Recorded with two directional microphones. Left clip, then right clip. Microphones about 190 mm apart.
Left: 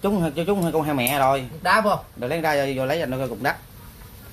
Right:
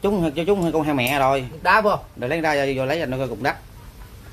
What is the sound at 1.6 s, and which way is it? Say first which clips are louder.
Speech: right 3 dB; 45° right (ahead or behind).